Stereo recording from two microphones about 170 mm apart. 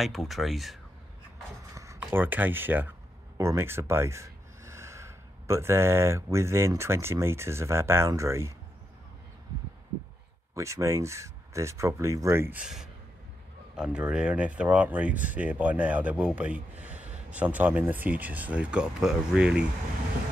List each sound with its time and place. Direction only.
0.0 s speech: centre (ahead or behind)
1.8 s a sound: 15° right (ahead or behind)
2.0 s speech: 10° right (ahead or behind)
10.5 s speech: 20° right (ahead or behind)